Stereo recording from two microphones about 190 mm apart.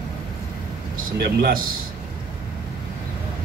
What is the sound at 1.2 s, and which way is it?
Speech, 55° right (ahead or behind).